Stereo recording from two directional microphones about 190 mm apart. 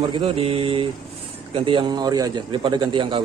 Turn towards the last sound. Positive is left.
turn(degrees=-25)  # may be behind; listen again after turning